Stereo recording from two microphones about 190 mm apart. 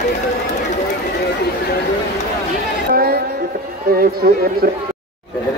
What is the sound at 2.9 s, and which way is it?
Music, 55° right (ahead or behind).